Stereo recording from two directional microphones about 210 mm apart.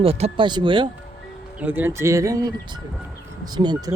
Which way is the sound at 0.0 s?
25° right (ahead or behind).